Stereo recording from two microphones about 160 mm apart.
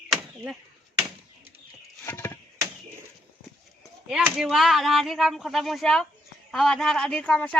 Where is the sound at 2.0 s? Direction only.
15° left (ahead or behind).